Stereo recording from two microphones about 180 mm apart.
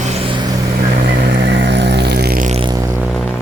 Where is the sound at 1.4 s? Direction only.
70° right (ahead or behind).